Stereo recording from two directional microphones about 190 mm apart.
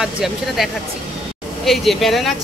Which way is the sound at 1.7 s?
Centre (ahead or behind).